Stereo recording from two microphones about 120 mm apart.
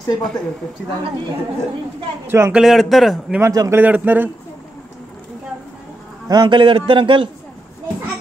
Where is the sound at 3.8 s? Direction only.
15° right (ahead or behind).